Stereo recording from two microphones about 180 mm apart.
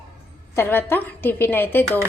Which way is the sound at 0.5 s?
10° left (ahead or behind).